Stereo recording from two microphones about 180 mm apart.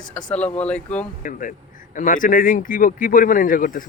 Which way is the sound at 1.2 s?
45° left (ahead or behind).